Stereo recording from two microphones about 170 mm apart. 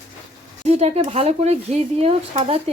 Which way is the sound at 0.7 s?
40° right (ahead or behind).